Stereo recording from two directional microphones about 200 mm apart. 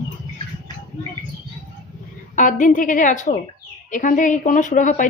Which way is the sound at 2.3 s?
40° left (ahead or behind).